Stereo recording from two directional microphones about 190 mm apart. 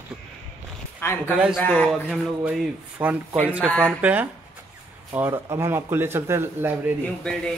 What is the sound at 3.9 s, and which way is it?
A man's voice, 10° right (ahead or behind).